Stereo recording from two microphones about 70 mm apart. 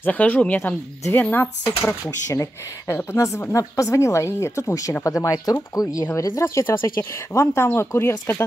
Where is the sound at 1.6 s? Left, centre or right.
Left.